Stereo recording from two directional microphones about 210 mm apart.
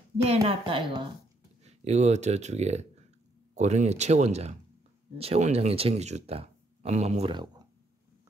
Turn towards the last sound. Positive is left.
turn(degrees=-25)  # may be behind; listen again after turning